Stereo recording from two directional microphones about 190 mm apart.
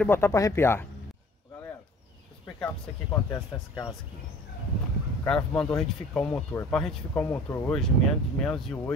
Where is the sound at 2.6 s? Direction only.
15° left (ahead or behind).